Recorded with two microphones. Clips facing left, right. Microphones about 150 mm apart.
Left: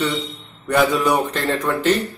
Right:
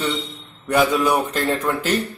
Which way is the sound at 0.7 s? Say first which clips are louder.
Even; 5° right (ahead or behind).